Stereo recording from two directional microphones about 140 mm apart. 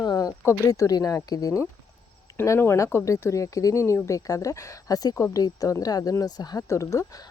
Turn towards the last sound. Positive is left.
turn(degrees=25)  # may be behind; listen again after turning